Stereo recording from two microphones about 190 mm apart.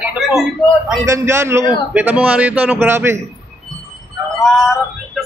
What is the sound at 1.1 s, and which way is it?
A man's voice, 15° right (ahead or behind).